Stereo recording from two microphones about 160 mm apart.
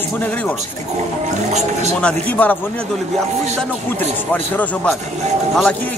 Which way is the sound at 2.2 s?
10° left (ahead or behind).